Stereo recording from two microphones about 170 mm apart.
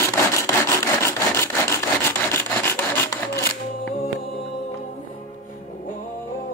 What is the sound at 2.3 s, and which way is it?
Filing, 15° left (ahead or behind).